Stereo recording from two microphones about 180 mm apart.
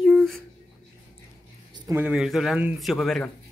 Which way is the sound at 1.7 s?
25° right (ahead or behind).